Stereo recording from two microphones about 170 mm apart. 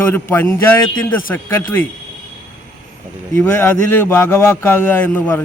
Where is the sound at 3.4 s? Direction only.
15° left (ahead or behind).